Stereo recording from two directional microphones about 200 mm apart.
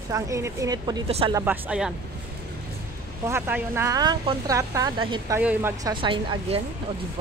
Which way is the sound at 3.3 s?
10° right (ahead or behind).